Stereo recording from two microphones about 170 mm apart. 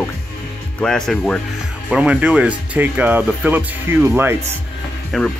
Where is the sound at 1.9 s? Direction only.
5° right (ahead or behind).